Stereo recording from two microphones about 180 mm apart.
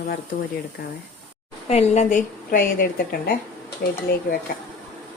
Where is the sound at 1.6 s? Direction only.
35° left (ahead or behind); by 4.0 s 60° left (ahead or behind).